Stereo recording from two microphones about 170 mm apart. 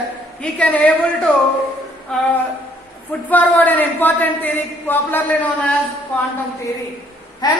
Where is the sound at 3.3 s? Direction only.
10° left (ahead or behind).